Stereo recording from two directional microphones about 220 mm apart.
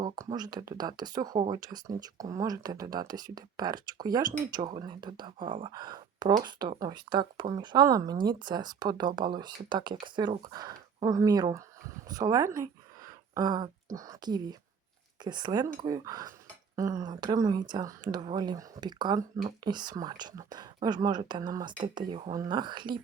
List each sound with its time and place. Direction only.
0.0 s speech: 20° right (ahead or behind)